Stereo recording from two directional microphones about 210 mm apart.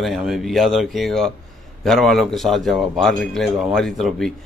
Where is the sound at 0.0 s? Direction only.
Centre (ahead or behind).